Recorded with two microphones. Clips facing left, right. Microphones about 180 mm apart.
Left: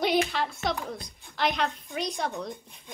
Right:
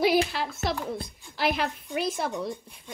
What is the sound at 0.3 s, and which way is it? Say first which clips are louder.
A child's voice: even; 5° right (ahead or behind).